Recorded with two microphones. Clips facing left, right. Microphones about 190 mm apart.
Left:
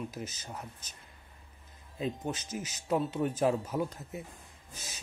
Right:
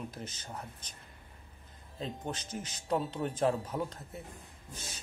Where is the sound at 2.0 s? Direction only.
10° left (ahead or behind).